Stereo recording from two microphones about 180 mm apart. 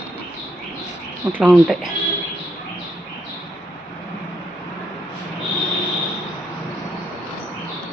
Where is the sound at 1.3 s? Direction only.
5° right (ahead or behind).